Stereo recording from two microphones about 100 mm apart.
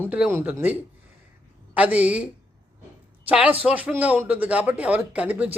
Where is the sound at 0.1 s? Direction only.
15° right (ahead or behind).